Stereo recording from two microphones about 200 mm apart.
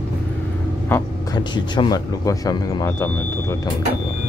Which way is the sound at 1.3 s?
20° left (ahead or behind).